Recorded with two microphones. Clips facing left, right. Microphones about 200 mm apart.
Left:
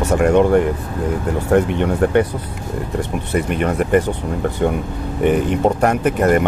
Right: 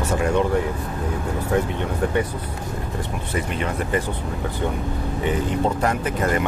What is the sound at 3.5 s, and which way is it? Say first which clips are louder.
Speech: left 9 dB; 60° left (ahead or behind).